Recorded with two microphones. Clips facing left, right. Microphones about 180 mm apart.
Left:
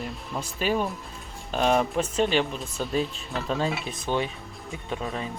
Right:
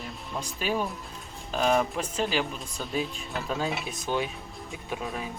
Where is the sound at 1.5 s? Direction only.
Centre (ahead or behind).